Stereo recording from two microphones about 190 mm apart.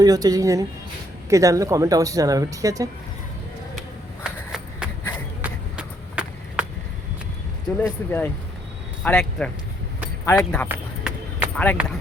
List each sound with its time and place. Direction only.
0.0 s speech: 20° right (ahead or behind)
4.2 s a sound: 5° right (ahead or behind)
7.8 s speech: 10° left (ahead or behind)
10.7 s run: 10° right (ahead or behind)
11.5 s speech: 10° left (ahead or behind)